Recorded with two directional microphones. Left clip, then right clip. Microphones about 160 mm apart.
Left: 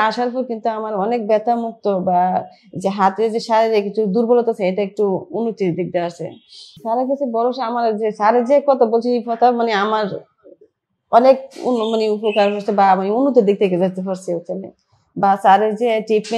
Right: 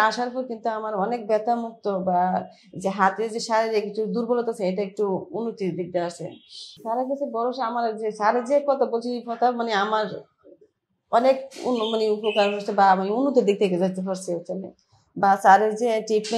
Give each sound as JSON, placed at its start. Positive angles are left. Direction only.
{"t": 0.0, "sound": "a man's voice", "side_deg": 25}